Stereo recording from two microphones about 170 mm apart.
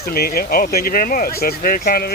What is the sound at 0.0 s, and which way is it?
Speech, 65° left (ahead or behind).